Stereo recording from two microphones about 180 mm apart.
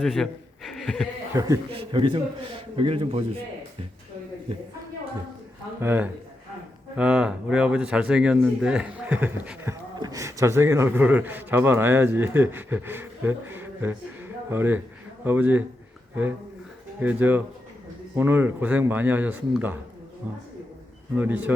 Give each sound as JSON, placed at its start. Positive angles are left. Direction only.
{"t": 0.0, "sound": "speech", "side_deg": 0}
{"t": 1.3, "sound": "a man's voice", "side_deg": -20}
{"t": 1.7, "sound": "a man's voice", "side_deg": -30}
{"t": 5.8, "sound": "speech", "side_deg": -10}
{"t": 17.0, "sound": "speech", "side_deg": -10}